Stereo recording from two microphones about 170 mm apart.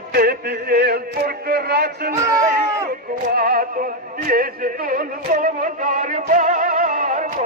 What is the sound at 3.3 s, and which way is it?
Music, 60° right (ahead or behind).